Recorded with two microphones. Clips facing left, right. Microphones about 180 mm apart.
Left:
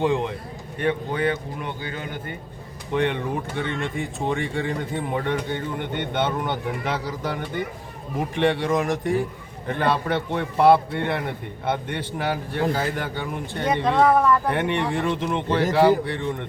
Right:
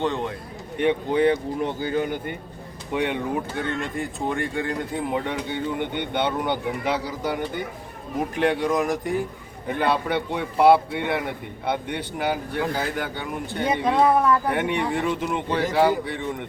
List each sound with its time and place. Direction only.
0.0 s a man's voice: 10° left (ahead or behind)
0.8 s a man's voice: 25° right (ahead or behind)
2.9 s a man's voice: 10° right (ahead or behind)